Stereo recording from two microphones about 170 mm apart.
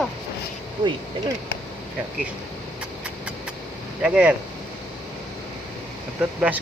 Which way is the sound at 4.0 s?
5° right (ahead or behind).